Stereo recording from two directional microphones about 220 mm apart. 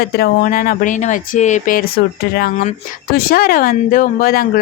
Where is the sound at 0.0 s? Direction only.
45° left (ahead or behind).